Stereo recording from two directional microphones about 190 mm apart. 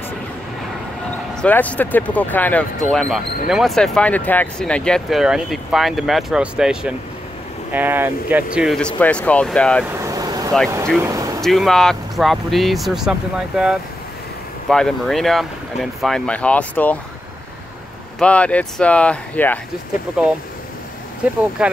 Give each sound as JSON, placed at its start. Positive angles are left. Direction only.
{"t": 1.3, "sound": "speech", "side_deg": 5}
{"t": 9.8, "sound": "vehicle", "side_deg": -15}
{"t": 11.0, "sound": "speech", "side_deg": -15}
{"t": 11.4, "sound": "speech", "side_deg": 0}
{"t": 14.7, "sound": "speech", "side_deg": 5}
{"t": 18.2, "sound": "speech", "side_deg": 5}
{"t": 21.2, "sound": "speech", "side_deg": -5}